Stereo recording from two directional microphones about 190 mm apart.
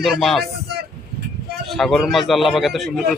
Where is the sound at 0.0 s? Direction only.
Centre (ahead or behind).